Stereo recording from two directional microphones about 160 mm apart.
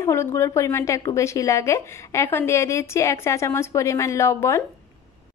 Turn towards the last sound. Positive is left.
turn(degrees=20)  # may be behind; listen again after turning